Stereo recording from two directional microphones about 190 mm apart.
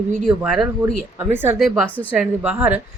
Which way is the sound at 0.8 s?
10° right (ahead or behind).